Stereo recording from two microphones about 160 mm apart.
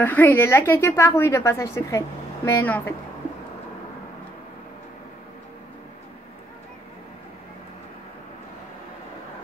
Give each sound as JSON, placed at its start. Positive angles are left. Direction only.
{"t": 0.0, "sound": "a woman's voice", "side_deg": 10}